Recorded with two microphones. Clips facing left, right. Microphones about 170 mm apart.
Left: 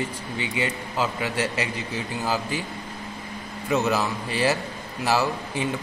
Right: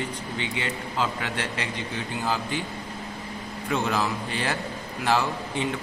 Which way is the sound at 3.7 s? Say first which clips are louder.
Left 3 dB; 5° left (ahead or behind).